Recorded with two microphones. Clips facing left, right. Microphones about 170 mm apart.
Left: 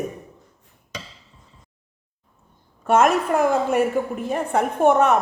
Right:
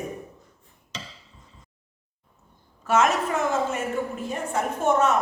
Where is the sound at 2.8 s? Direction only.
55° left (ahead or behind).